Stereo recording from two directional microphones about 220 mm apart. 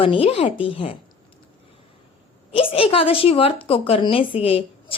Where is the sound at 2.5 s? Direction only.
25° left (ahead or behind).